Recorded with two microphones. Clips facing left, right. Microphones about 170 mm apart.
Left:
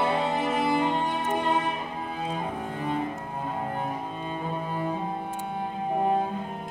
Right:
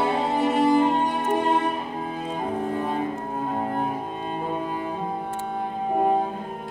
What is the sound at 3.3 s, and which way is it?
Cello, 45° right (ahead or behind).